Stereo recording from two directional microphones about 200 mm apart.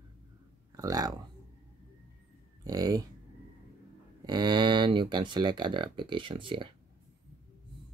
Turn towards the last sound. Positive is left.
turn(degrees=-25)  # may be behind; listen again after turning